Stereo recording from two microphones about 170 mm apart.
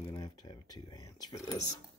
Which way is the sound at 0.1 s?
25° left (ahead or behind).